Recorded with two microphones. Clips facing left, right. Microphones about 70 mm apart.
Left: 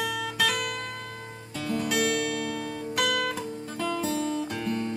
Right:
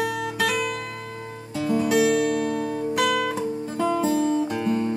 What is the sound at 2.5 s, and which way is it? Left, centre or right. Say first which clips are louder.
Music: right 7 dB; centre.